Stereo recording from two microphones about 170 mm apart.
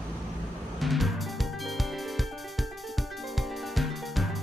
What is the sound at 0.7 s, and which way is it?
Music, centre (ahead or behind).